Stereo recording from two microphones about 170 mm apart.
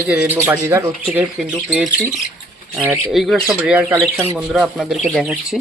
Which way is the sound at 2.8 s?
10° right (ahead or behind).